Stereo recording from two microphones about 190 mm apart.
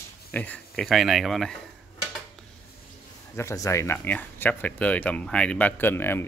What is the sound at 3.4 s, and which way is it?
Speech, 15° left (ahead or behind).